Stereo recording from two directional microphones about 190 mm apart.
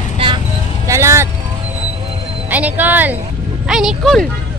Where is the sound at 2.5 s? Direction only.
10° right (ahead or behind).